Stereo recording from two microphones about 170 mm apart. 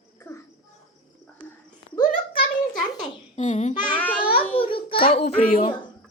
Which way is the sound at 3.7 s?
30° left (ahead or behind).